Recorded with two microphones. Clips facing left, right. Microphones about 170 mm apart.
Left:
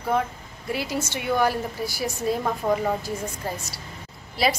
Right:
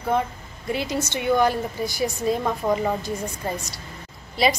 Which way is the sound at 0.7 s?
5° left (ahead or behind).